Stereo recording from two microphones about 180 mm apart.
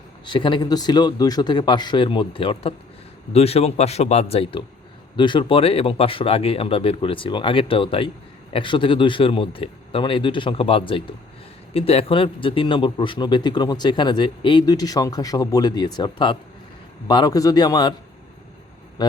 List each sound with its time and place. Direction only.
0.3 s a man's voice: 25° left (ahead or behind)
19.0 s a man's voice: 25° left (ahead or behind)